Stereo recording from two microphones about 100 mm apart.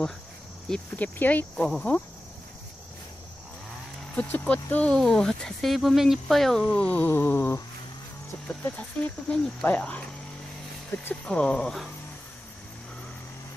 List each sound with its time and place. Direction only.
0.9 s speech: 15° left (ahead or behind)
4.1 s speech: 15° left (ahead or behind)
6.7 s a sound: 15° left (ahead or behind)
8.6 s speech: 15° left (ahead or behind)
10.9 s a sound: 20° left (ahead or behind)
11.2 s speech: 10° left (ahead or behind)